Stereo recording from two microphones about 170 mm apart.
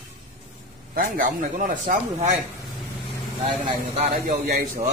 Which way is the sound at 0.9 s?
55° right (ahead or behind).